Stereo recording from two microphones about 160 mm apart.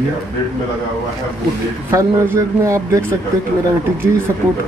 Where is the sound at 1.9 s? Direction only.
20° right (ahead or behind).